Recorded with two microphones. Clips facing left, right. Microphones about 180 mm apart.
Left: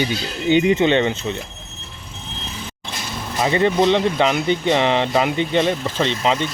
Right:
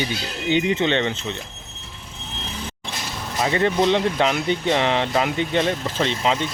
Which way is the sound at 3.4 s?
Centre (ahead or behind).